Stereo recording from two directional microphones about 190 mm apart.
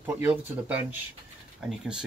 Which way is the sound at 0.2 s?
10° right (ahead or behind).